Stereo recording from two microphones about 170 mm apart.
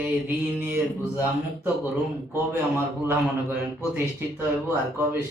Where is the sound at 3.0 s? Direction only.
10° right (ahead or behind).